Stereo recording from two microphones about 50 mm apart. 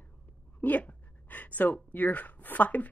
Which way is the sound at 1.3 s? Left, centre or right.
Left.